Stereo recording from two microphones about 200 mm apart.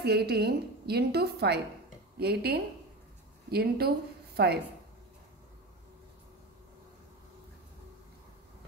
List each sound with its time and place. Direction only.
0.0 s a woman's voice: 55° right (ahead or behind)